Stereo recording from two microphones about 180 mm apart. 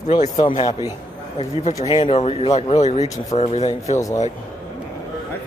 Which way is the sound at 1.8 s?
30° left (ahead or behind).